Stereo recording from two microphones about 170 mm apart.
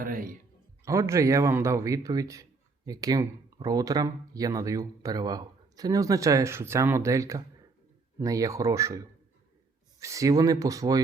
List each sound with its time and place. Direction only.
0.0 s speech: 55° right (ahead or behind)
0.9 s speech: 15° right (ahead or behind)
10.0 s speech: 20° right (ahead or behind)